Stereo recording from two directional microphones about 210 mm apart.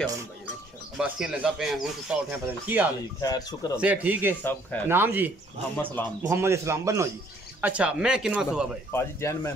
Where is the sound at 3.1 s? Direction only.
15° left (ahead or behind).